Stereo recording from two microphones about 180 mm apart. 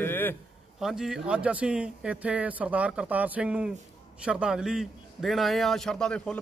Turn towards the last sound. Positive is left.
turn(degrees=0)  # may be behind; listen again after turning